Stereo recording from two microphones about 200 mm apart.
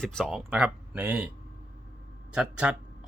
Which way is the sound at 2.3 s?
5° right (ahead or behind).